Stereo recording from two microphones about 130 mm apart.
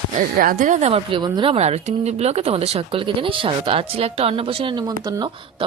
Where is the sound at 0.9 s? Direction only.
45° right (ahead or behind).